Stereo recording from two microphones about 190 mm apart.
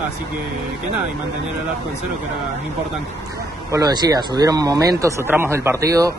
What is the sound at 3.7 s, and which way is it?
Speech, 20° right (ahead or behind).